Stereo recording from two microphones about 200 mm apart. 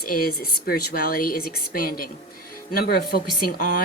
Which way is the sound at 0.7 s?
50° left (ahead or behind).